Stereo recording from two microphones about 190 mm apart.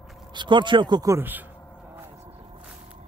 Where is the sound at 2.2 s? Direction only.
30° right (ahead or behind).